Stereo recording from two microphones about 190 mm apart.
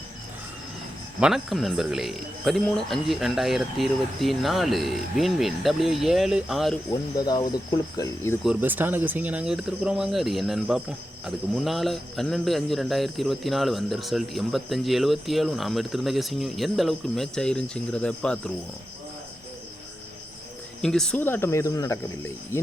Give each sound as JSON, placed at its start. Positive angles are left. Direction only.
{"t": 1.2, "sound": "speech", "side_deg": 0}
{"t": 7.3, "sound": "speech", "side_deg": 20}
{"t": 8.4, "sound": "speech", "side_deg": -10}
{"t": 20.8, "sound": "speech", "side_deg": 5}